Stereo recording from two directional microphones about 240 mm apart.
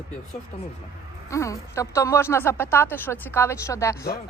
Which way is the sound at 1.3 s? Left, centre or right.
Centre.